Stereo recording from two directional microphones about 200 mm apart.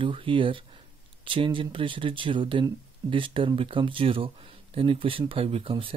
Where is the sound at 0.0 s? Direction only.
25° right (ahead or behind).